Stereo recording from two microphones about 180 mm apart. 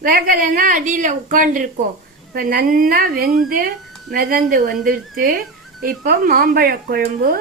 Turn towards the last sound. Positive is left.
turn(degrees=-55)  # may be behind; listen again after turning